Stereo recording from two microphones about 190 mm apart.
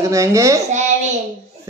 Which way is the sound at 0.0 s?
15° right (ahead or behind).